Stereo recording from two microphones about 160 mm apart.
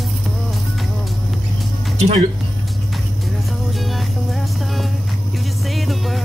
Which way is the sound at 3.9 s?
Centre (ahead or behind).